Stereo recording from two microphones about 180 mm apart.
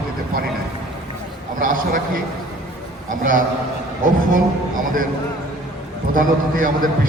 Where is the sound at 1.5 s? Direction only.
50° right (ahead or behind).